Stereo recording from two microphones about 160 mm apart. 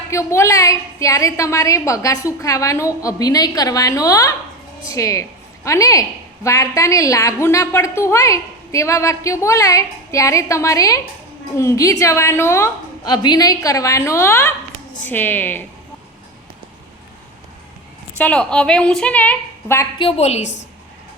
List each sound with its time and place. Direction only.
0.1 s a woman's voice: 15° left (ahead or behind)
18.2 s a woman's voice: 10° left (ahead or behind)
20.0 s a woman's voice: 40° left (ahead or behind)